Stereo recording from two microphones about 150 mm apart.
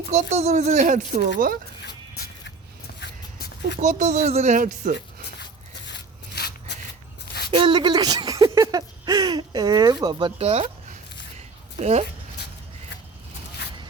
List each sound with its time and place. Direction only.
0.1 s speech: 50° right (ahead or behind)
3.8 s speech: 55° right (ahead or behind)
6.3 s a sound: 90° left
7.5 s speech: 30° right (ahead or behind)
11.8 s speech: 45° right (ahead or behind)